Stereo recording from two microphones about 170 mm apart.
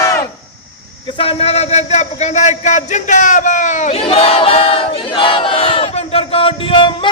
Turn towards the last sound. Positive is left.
turn(degrees=30)  # may be behind; listen again after turning